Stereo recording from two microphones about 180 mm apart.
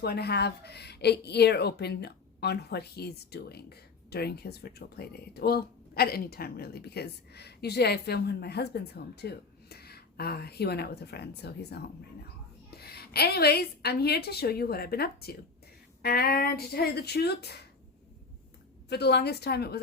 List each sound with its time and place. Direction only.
0.0 s a woman's voice: 65° left (ahead or behind)
18.9 s a woman's voice: 65° left (ahead or behind)